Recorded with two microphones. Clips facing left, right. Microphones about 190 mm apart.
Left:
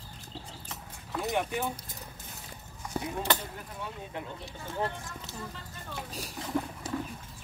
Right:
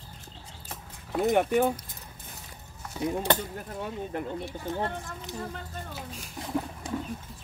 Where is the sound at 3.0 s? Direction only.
50° left (ahead or behind).